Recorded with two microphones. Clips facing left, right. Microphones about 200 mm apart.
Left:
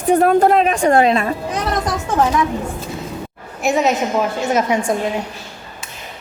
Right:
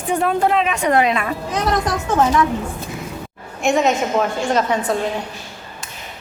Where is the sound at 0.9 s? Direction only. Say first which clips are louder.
Left 2 dB; 30° left (ahead or behind).